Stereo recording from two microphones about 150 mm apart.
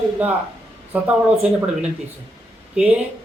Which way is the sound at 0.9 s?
10° right (ahead or behind).